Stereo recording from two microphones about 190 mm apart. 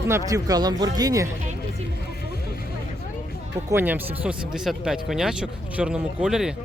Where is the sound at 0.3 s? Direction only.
20° right (ahead or behind).